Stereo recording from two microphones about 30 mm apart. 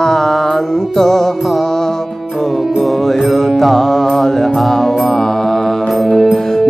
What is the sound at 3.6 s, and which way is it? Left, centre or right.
Mantra, centre.